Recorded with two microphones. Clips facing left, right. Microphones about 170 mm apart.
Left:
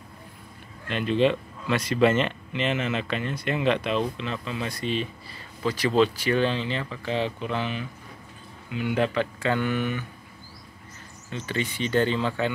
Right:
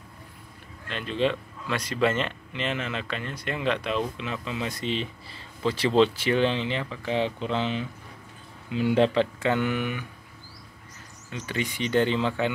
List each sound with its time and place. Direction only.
0.8 s speech: 5° left (ahead or behind)
4.2 s speech: 15° right (ahead or behind)
11.2 s speech: 15° right (ahead or behind)